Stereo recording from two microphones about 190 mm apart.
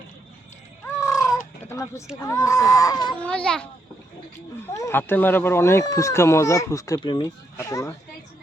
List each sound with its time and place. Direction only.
0.9 s chicken: 15° left (ahead or behind)
2.2 s speech: 15° left (ahead or behind)
3.2 s a child's voice: 5° left (ahead or behind)
4.7 s speech: 15° left (ahead or behind)